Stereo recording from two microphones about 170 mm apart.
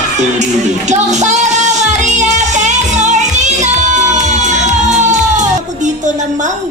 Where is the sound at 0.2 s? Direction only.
45° right (ahead or behind).